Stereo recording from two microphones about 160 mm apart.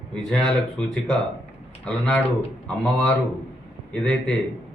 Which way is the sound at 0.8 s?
5° left (ahead or behind).